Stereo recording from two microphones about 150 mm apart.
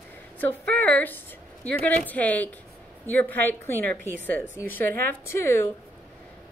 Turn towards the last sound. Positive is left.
turn(degrees=15)  # may be behind; listen again after turning